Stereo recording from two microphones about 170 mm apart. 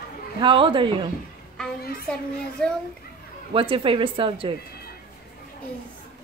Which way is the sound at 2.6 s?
5° left (ahead or behind).